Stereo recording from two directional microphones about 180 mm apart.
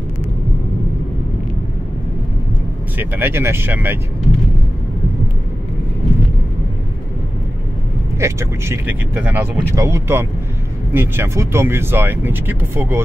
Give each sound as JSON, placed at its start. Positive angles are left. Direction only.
{"t": 3.0, "sound": "speech", "side_deg": -10}
{"t": 8.2, "sound": "speech", "side_deg": -15}